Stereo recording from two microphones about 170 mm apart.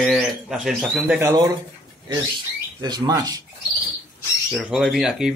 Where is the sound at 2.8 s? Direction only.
25° right (ahead or behind).